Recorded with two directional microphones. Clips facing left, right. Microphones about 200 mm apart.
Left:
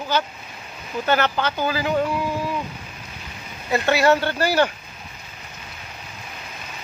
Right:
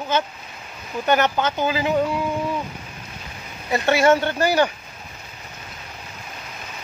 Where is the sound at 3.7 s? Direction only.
25° right (ahead or behind).